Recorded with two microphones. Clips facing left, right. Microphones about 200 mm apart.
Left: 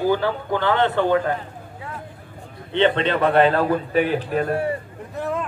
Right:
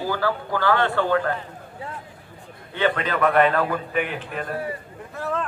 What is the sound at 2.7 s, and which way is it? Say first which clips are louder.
A man's voice: left 5 dB; 25° left (ahead or behind).